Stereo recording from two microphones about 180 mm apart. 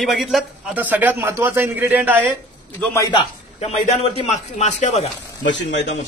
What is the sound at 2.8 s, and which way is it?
Speech, 15° left (ahead or behind).